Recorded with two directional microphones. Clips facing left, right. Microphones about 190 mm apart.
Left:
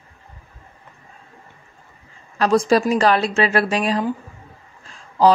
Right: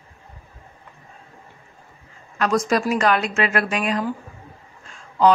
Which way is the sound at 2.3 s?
30° left (ahead or behind).